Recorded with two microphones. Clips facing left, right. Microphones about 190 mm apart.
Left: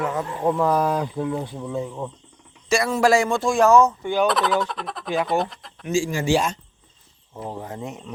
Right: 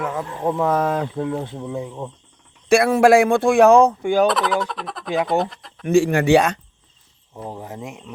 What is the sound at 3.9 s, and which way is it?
Fowl, 55° right (ahead or behind).